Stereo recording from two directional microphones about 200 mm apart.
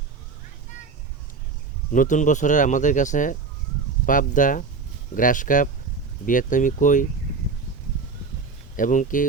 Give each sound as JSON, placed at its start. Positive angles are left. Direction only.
{"t": 1.9, "sound": "speech", "side_deg": 40}
{"t": 8.7, "sound": "speech", "side_deg": 40}